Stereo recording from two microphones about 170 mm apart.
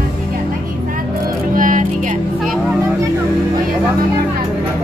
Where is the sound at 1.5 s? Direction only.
50° right (ahead or behind).